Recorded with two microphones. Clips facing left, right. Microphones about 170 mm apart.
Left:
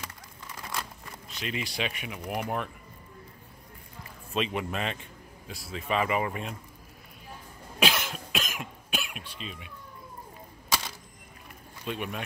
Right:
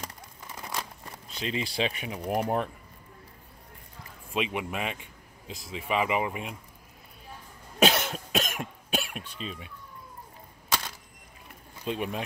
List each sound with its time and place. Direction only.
0.6 s a sound: 20° right (ahead or behind)
1.3 s speech: 30° right (ahead or behind)
4.3 s speech: 10° right (ahead or behind)
7.9 s cough: 40° right (ahead or behind)
11.8 s speech: 30° right (ahead or behind)